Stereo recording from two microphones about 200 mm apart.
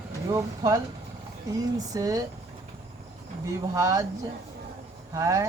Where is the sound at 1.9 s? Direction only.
15° right (ahead or behind).